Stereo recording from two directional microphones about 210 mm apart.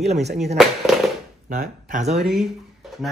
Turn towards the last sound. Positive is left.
turn(degrees=0)  # may be behind; listen again after turning